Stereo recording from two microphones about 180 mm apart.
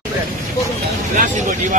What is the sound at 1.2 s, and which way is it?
Speech, 40° right (ahead or behind).